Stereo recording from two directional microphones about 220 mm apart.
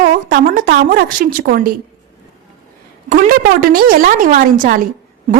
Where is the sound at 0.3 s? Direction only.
40° right (ahead or behind).